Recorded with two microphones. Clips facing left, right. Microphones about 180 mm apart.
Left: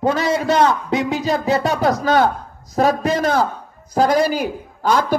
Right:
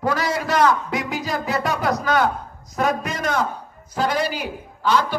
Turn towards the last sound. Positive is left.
turn(degrees=40)  # may be behind; listen again after turning